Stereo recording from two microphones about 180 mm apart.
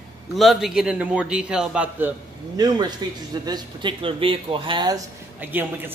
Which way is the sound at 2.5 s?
25° right (ahead or behind).